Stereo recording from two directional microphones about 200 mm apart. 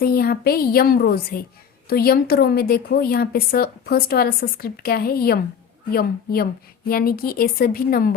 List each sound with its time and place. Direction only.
0.0 s a woman's voice: 50° left (ahead or behind)